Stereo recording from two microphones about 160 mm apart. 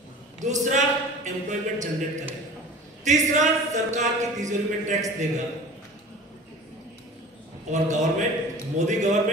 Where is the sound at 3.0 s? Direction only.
50° right (ahead or behind).